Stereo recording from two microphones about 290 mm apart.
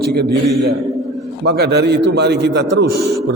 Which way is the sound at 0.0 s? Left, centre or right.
Right.